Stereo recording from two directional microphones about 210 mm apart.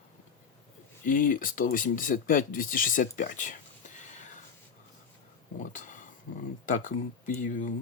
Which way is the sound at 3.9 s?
35° left (ahead or behind).